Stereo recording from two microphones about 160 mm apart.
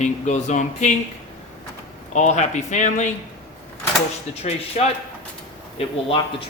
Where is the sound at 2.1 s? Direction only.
45° left (ahead or behind).